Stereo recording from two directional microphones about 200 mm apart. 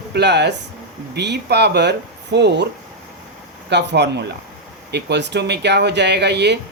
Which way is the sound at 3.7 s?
60° right (ahead or behind).